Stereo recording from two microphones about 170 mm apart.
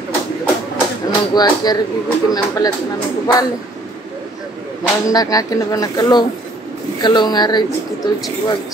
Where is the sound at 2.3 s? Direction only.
20° left (ahead or behind).